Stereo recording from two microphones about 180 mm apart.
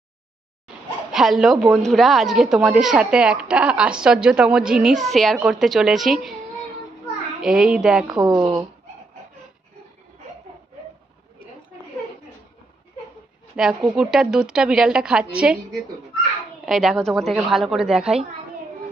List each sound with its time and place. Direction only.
1.1 s a woman's voice: centre (ahead or behind)
7.4 s a woman's voice: 5° right (ahead or behind)
8.2 s speech: 20° right (ahead or behind)
13.6 s a woman's voice: 5° right (ahead or behind)
16.6 s a woman's voice: centre (ahead or behind)